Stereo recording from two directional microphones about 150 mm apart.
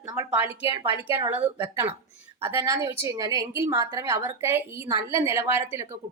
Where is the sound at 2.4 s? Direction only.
25° right (ahead or behind).